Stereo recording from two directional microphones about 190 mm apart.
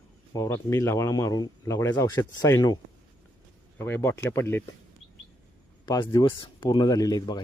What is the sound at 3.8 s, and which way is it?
Speech, 15° left (ahead or behind).